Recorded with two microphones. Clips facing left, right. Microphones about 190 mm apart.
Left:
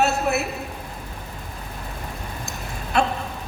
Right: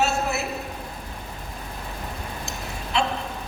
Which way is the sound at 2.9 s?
50° left (ahead or behind).